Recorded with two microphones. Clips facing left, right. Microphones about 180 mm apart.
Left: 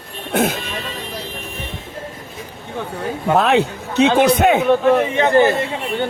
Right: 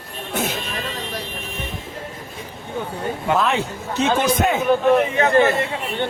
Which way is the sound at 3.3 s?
65° left (ahead or behind).